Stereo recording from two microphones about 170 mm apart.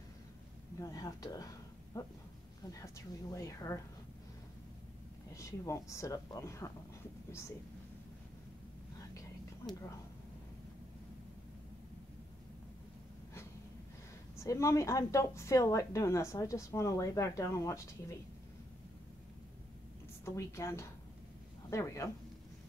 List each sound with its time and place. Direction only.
0.7 s a woman's voice: 20° left (ahead or behind)
5.3 s a woman's voice: 15° left (ahead or behind)
14.3 s a woman's voice: 15° left (ahead or behind)
20.2 s a woman's voice: 15° left (ahead or behind)